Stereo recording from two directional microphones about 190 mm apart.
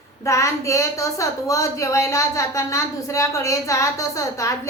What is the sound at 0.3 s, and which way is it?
A woman's voice, 15° left (ahead or behind).